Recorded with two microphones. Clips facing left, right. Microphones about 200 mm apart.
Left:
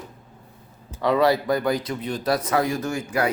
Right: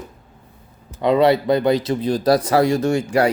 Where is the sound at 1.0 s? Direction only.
20° right (ahead or behind).